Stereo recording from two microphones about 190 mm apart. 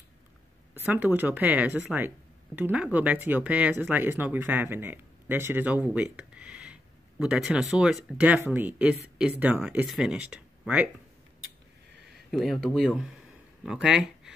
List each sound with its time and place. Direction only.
0.7 s speech: 10° right (ahead or behind)
12.3 s speech: centre (ahead or behind)